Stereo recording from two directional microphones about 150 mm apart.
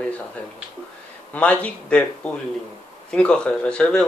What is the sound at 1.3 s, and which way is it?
Speech, 10° left (ahead or behind).